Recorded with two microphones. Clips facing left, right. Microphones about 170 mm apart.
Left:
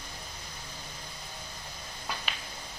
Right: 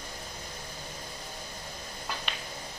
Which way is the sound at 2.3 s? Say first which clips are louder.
Right 1 dB; centre (ahead or behind).